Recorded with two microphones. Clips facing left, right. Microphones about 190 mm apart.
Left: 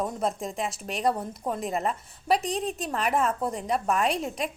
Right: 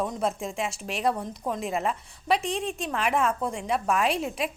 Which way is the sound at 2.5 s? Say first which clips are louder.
Even; 35° left (ahead or behind).